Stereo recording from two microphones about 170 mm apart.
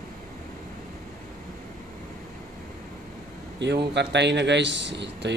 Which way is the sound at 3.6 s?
90° right.